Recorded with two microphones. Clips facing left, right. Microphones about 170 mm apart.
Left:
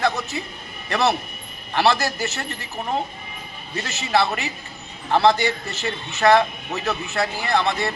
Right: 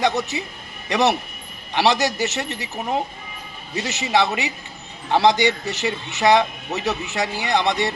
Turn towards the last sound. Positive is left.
turn(degrees=-15)  # may be behind; listen again after turning